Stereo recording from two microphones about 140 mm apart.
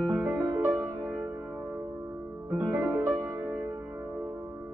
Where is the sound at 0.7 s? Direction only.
30° right (ahead or behind).